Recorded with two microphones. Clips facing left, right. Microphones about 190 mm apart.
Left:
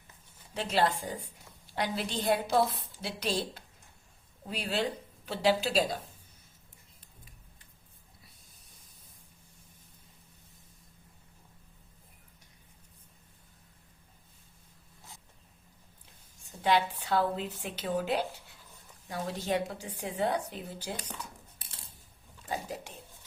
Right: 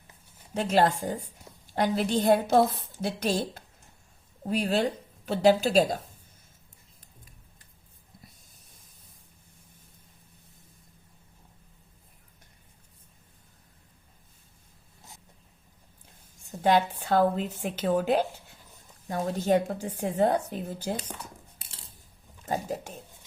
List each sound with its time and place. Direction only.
0.5 s a woman's voice: 45° right (ahead or behind)
16.6 s a woman's voice: 45° right (ahead or behind)
22.4 s a woman's voice: 45° right (ahead or behind)